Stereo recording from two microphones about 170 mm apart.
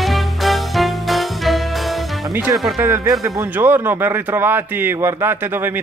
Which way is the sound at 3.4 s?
10° right (ahead or behind).